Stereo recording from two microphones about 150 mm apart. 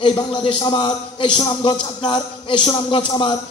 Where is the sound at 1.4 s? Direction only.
30° left (ahead or behind).